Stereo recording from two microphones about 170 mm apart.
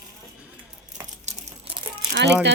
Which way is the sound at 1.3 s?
40° right (ahead or behind).